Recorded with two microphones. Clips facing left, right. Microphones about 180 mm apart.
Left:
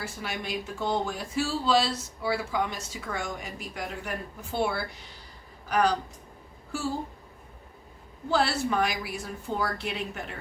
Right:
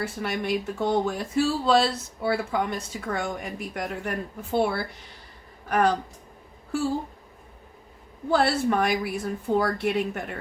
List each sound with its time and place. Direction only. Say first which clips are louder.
0.0 s speech: right 6 dB; 60° right (ahead or behind)
8.3 s speech: right 4 dB; 55° right (ahead or behind)